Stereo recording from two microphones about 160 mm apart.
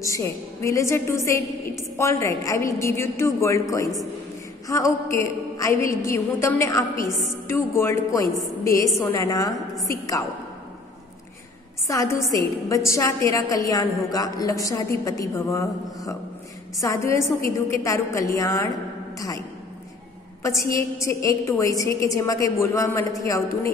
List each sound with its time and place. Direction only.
0.0 s a woman's voice: 20° left (ahead or behind)
11.9 s a woman's voice: 20° left (ahead or behind)
21.0 s a woman's voice: 20° left (ahead or behind)